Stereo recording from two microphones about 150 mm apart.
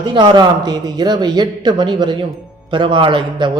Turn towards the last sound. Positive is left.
turn(degrees=-30)  # may be behind; listen again after turning